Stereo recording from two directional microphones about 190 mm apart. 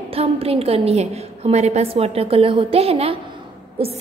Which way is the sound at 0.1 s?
30° right (ahead or behind).